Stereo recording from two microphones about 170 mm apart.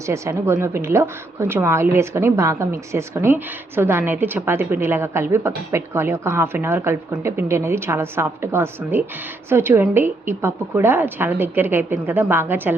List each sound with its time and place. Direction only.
0.0 s a woman's voice: 15° right (ahead or behind)